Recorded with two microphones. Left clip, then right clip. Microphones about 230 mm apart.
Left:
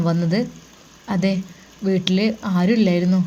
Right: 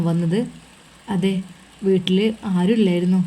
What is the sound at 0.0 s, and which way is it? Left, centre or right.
Speech, centre.